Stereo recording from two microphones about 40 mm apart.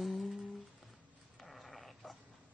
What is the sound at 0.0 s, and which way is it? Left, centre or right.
Humming, centre.